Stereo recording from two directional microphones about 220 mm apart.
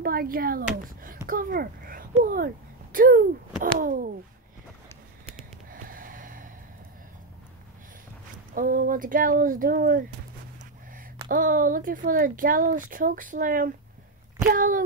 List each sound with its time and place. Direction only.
0.0 s speech: 40° right (ahead or behind)
5.7 s snort: 40° right (ahead or behind)
8.5 s speech: 40° right (ahead or behind)
11.2 s speech: 40° right (ahead or behind)